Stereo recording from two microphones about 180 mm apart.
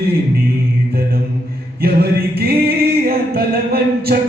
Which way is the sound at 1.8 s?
60° right (ahead or behind).